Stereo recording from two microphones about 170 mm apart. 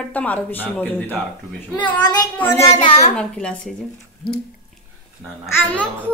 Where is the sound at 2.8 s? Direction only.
35° left (ahead or behind).